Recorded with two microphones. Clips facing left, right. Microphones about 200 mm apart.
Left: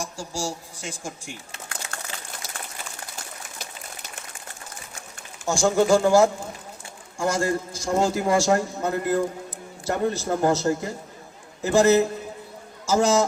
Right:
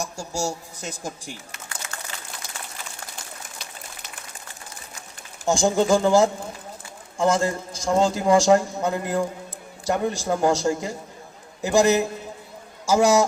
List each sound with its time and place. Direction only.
0.0 s a woman's voice: 40° right (ahead or behind)
5.5 s a man's voice: 20° right (ahead or behind)